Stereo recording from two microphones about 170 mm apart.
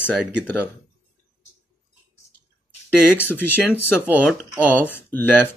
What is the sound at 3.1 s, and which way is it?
Speech, 10° left (ahead or behind).